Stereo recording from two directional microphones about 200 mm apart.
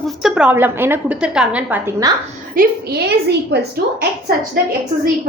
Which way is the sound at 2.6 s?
45° right (ahead or behind).